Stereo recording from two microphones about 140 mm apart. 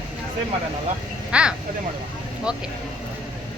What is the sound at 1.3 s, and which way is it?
Speech, 5° right (ahead or behind).